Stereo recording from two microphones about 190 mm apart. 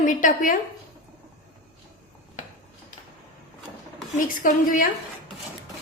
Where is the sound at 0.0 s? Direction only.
45° left (ahead or behind).